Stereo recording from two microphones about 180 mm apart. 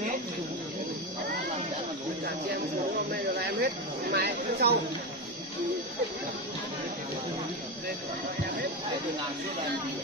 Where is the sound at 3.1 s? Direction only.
60° right (ahead or behind).